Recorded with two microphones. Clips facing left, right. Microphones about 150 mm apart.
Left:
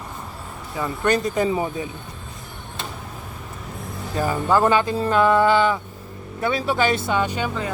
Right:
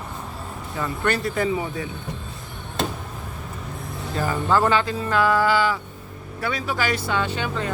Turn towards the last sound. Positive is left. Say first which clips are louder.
# left 1 dB
turn(degrees=10)  # may be behind; listen again after turning